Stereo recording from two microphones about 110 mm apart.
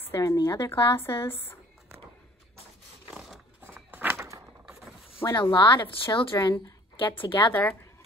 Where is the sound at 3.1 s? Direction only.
5° right (ahead or behind).